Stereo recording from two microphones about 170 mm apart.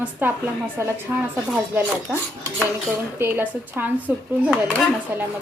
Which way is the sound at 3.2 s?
10° right (ahead or behind).